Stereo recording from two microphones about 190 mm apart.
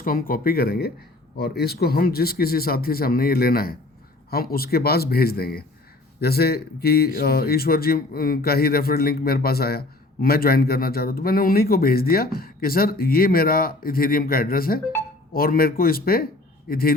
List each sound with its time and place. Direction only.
0.0 s speech: 50° left (ahead or behind)